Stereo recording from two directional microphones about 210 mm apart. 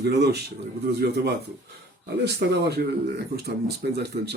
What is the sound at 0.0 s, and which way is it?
Speech, 50° right (ahead or behind).